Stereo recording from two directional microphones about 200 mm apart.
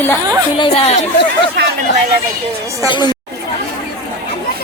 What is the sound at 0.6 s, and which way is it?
Speech, 30° left (ahead or behind).